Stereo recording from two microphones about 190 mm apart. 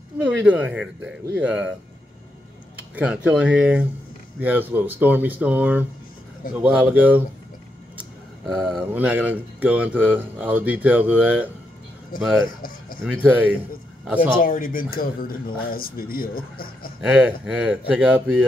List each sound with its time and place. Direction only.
0.5 s speech: 10° right (ahead or behind)
3.0 s speech: 5° right (ahead or behind)
13.2 s speech: 5° right (ahead or behind)
14.4 s speech: 45° left (ahead or behind)
17.0 s speech: 5° right (ahead or behind)